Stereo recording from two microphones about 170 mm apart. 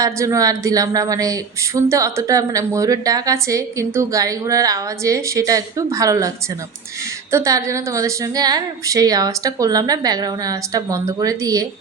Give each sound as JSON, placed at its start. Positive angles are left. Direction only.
{"t": 0.0, "sound": "speech", "side_deg": -20}